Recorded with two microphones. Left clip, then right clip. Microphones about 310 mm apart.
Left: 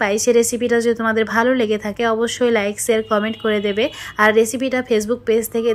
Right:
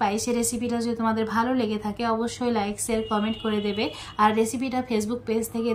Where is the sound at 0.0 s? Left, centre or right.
Centre.